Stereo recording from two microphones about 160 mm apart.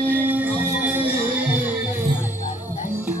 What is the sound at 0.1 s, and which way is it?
Music, 10° right (ahead or behind).